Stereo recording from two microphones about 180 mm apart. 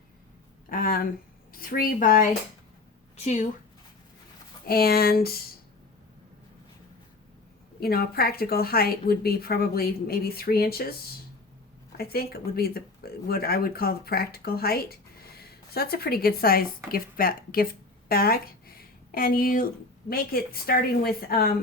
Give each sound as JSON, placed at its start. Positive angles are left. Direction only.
{"t": 0.7, "sound": "speech", "side_deg": 55}
{"t": 4.6, "sound": "speech", "side_deg": 55}
{"t": 7.8, "sound": "speech", "side_deg": 60}
{"t": 11.9, "sound": "speech", "side_deg": 55}
{"t": 18.1, "sound": "a sound", "side_deg": 55}
{"t": 20.1, "sound": "speech", "side_deg": 55}